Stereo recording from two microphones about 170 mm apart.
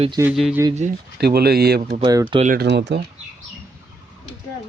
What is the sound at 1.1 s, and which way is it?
Speech, 70° right (ahead or behind).